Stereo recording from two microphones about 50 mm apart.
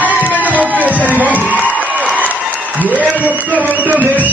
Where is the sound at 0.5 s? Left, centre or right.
Right.